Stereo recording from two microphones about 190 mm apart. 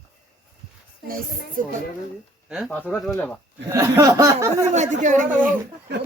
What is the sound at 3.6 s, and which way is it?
Speech, 15° right (ahead or behind).